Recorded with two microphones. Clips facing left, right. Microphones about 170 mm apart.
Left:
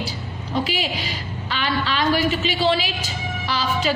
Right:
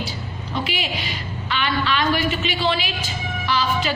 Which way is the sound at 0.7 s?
35° left (ahead or behind).